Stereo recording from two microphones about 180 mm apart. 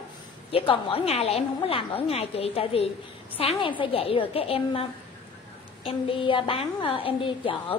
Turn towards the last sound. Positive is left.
turn(degrees=30)  # may be behind; listen again after turning